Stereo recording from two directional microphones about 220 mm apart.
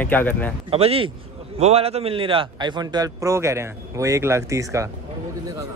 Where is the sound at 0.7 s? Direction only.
25° right (ahead or behind).